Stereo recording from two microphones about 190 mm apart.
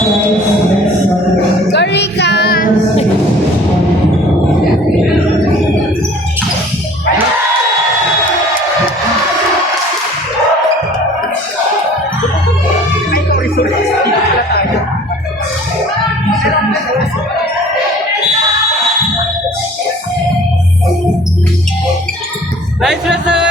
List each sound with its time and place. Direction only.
1.7 s music: 65° left (ahead or behind)
13.1 s music: 50° left (ahead or behind)
22.8 s a sound: 5° right (ahead or behind)